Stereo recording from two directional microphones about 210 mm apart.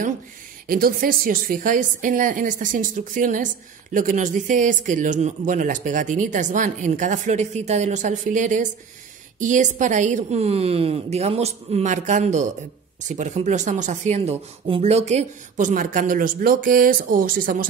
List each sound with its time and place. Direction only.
0.7 s speech: 45° right (ahead or behind)